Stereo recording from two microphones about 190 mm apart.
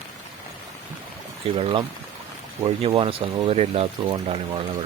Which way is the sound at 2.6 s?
30° right (ahead or behind).